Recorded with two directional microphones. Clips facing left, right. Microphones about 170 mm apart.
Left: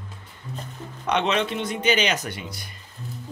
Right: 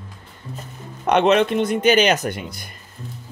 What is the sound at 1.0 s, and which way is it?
Speech, 55° right (ahead or behind).